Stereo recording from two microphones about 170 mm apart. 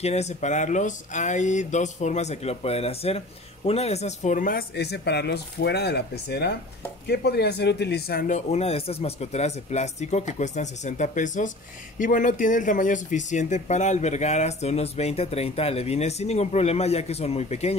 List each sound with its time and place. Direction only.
0.0 s speech: 40° left (ahead or behind)
4.7 s speech: 80° left; by 17.7 s 40° left (ahead or behind)